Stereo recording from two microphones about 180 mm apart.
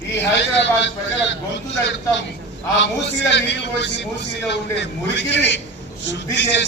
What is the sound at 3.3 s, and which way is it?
Speech, 75° left (ahead or behind).